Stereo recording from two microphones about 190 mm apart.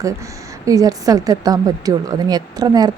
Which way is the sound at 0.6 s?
20° right (ahead or behind).